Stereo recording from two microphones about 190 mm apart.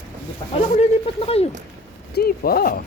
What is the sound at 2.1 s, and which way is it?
Speech, 55° left (ahead or behind).